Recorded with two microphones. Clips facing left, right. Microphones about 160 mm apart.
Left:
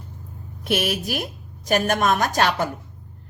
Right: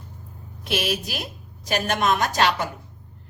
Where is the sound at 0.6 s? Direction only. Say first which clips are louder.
Left 2 dB; 50° left (ahead or behind).